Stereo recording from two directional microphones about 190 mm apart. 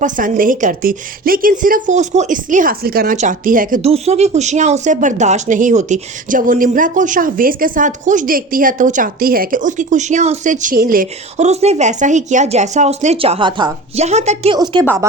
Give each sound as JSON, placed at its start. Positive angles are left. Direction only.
{"t": 0.0, "sound": "a woman's voice", "side_deg": -45}
{"t": 3.8, "sound": "speech", "side_deg": -35}
{"t": 14.0, "sound": "speech", "side_deg": -35}
{"t": 14.5, "sound": "a woman's voice", "side_deg": -25}